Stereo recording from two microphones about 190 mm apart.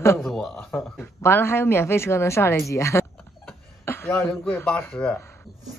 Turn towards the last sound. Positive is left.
turn(degrees=15)  # may be behind; listen again after turning